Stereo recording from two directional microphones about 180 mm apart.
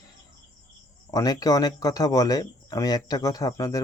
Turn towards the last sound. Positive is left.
turn(degrees=20)  # may be behind; listen again after turning